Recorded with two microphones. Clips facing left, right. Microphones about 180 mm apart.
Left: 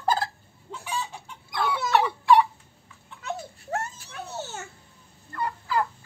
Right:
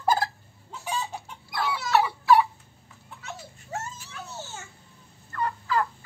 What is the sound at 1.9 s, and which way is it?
Turkey, 5° right (ahead or behind).